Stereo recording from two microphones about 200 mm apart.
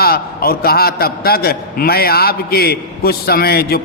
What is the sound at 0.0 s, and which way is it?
A man's voice, 50° left (ahead or behind).